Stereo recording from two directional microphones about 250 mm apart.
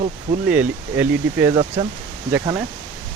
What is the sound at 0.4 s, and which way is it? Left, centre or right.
Speech, centre.